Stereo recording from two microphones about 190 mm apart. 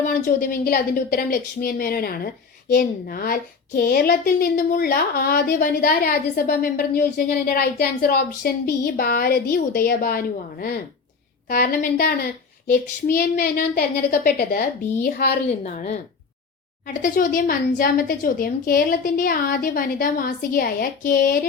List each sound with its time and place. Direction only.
0.1 s a woman's voice: 50° left (ahead or behind)
15.4 s a woman's voice: 35° left (ahead or behind)